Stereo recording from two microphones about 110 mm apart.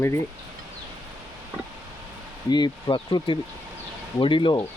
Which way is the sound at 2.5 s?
40° left (ahead or behind).